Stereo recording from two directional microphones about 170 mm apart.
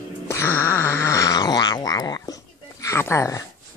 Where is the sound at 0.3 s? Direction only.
15° left (ahead or behind).